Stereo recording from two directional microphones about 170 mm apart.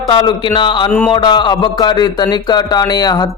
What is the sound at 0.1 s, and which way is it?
Speech, 30° left (ahead or behind).